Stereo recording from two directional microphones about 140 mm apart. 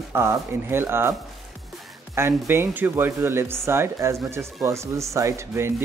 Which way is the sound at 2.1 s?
15° right (ahead or behind).